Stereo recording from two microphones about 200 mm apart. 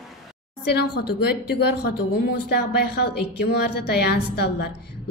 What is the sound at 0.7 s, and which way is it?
Speech, 55° left (ahead or behind).